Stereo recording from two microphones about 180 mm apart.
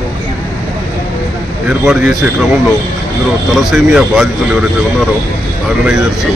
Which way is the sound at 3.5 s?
Centre (ahead or behind).